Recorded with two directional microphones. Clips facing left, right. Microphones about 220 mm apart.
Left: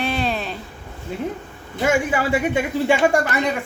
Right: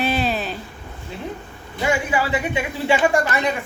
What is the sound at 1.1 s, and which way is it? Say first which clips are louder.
A woman's voice: left 5 dB; 45° left (ahead or behind).